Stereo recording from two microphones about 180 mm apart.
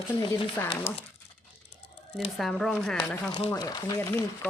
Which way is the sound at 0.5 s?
10° left (ahead or behind).